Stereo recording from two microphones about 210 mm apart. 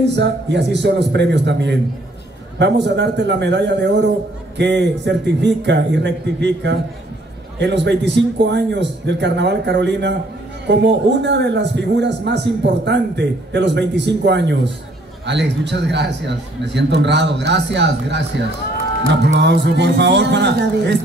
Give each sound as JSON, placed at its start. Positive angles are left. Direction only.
{"t": 0.1, "sound": "a man's voice", "side_deg": -55}
{"t": 19.2, "sound": "a man's voice", "side_deg": -55}